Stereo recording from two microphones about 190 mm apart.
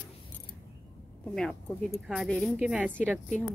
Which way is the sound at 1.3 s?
5° left (ahead or behind).